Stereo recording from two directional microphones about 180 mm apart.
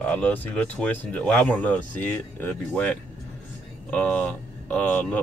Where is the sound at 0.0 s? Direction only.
5° left (ahead or behind).